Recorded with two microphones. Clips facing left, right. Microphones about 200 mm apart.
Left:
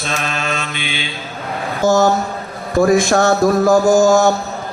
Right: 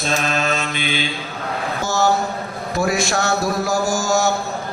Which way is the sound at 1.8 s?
50° left (ahead or behind).